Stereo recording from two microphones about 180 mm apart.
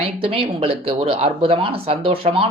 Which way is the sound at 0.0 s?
30° right (ahead or behind).